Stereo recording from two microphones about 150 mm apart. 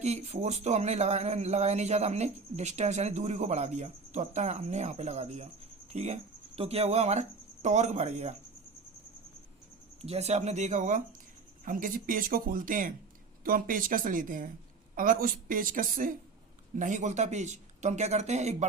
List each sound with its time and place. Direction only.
0.0 s speech: 45° right (ahead or behind)
10.0 s speech: 45° right (ahead or behind)